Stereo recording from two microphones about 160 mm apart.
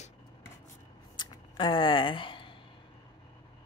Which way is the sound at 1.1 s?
30° left (ahead or behind).